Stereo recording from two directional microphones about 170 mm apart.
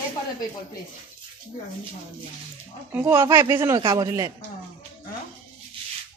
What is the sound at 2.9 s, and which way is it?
Speech, 15° right (ahead or behind).